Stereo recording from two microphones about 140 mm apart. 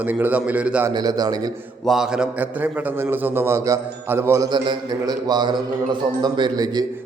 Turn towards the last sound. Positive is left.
turn(degrees=-30)  # may be behind; listen again after turning